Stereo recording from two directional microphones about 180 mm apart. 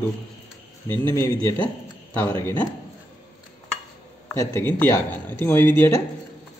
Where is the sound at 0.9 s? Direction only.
15° left (ahead or behind).